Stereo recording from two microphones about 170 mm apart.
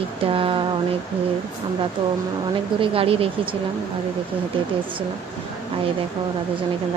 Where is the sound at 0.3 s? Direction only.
30° right (ahead or behind).